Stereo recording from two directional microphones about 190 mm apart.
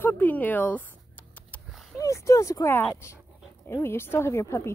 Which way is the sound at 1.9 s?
15° left (ahead or behind).